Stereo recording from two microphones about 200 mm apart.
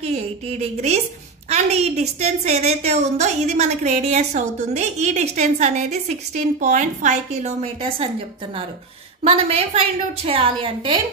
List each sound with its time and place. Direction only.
0.0 s a woman's voice: 35° right (ahead or behind)
9.2 s a woman's voice: 30° right (ahead or behind)